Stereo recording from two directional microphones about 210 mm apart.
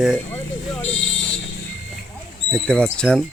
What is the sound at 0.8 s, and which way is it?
Vehicle, 65° left (ahead or behind).